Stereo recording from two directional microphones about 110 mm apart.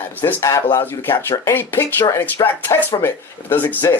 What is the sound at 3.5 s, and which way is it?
Speech, 20° left (ahead or behind).